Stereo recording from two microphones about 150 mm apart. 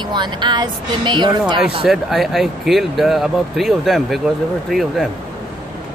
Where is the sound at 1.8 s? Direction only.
Centre (ahead or behind).